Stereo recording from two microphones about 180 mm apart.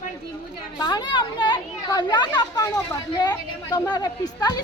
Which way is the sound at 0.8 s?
25° left (ahead or behind).